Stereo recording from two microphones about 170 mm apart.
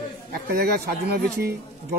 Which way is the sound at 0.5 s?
70° right (ahead or behind).